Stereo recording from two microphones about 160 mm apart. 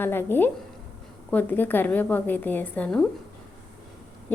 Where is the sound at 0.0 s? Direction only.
15° left (ahead or behind).